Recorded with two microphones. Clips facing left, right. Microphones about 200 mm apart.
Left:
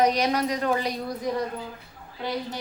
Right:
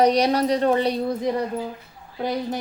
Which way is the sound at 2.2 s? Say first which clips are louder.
Right 5 dB; 50° right (ahead or behind).